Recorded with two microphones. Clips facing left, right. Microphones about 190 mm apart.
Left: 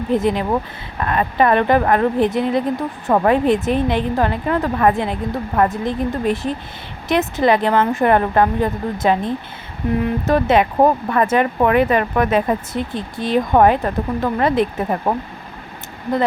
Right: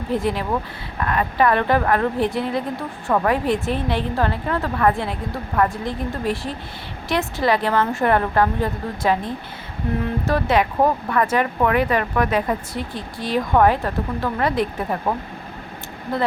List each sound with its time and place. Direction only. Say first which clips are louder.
0.1 s speech: left 4 dB; 20° left (ahead or behind)